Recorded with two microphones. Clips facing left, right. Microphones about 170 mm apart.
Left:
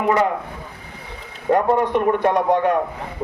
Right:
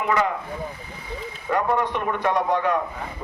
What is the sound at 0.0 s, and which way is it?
Speech, 40° left (ahead or behind).